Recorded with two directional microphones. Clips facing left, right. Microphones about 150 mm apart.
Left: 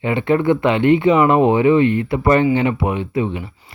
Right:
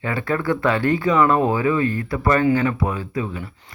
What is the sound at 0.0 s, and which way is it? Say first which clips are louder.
Speech: left 6 dB; 20° left (ahead or behind).